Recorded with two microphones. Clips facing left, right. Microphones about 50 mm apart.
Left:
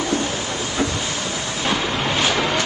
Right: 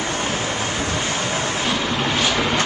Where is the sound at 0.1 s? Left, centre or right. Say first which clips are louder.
Left 1 dB; right.